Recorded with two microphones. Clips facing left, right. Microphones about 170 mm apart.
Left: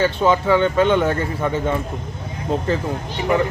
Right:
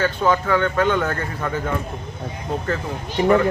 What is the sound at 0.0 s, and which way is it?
Speech, 25° left (ahead or behind).